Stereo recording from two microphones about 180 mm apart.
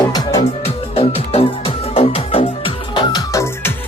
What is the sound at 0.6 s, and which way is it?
Music, 35° left (ahead or behind).